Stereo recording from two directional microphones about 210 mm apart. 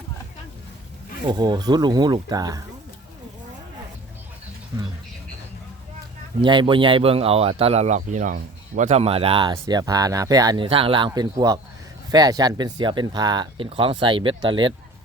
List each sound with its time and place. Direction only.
1.3 s speech: 20° right (ahead or behind)
6.4 s speech: 20° right (ahead or behind)